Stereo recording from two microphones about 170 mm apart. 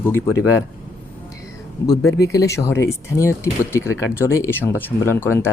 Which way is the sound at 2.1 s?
20° left (ahead or behind).